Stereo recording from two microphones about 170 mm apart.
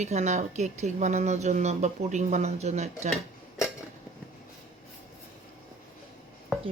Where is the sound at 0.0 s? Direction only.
40° right (ahead or behind).